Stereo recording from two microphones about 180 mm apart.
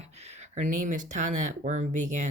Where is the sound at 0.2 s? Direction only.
35° right (ahead or behind).